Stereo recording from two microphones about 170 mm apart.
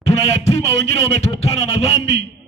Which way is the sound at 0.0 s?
40° left (ahead or behind).